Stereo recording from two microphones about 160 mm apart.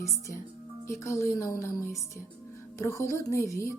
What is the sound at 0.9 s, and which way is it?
Speech, 20° left (ahead or behind).